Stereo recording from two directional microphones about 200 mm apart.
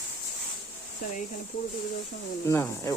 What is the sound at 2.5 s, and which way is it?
Speech, 15° left (ahead or behind).